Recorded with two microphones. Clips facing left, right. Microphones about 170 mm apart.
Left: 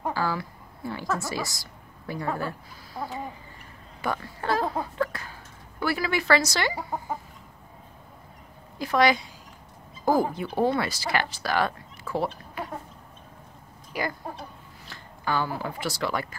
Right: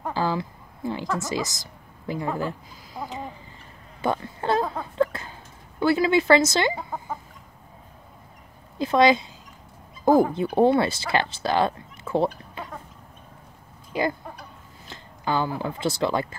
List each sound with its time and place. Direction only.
0.1 s speech: 20° right (ahead or behind)
4.9 s a sound: 25° right (ahead or behind)
5.8 s speech: 20° right (ahead or behind)
8.7 s speech: 25° right (ahead or behind)
13.9 s speech: 25° right (ahead or behind)